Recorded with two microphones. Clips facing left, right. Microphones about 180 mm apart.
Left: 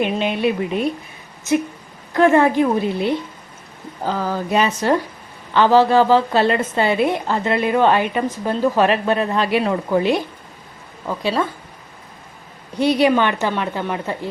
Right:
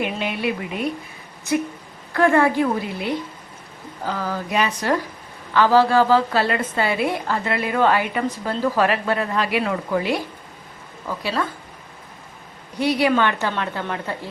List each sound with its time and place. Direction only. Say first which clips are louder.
0.0 s a woman's voice: left 5 dB; 25° left (ahead or behind)
2.1 s a woman's voice: left 3 dB; 20° left (ahead or behind)
12.8 s a woman's voice: left 3 dB; 25° left (ahead or behind)